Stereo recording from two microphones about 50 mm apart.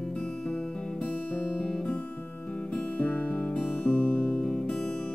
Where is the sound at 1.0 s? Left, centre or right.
Left.